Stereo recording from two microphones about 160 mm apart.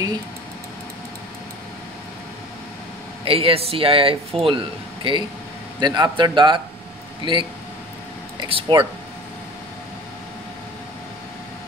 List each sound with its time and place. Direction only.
3.3 s a man's voice: 35° right (ahead or behind)